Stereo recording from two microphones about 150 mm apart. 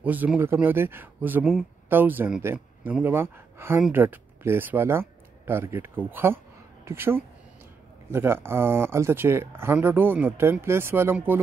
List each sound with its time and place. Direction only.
0.0 s speech: 10° right (ahead or behind)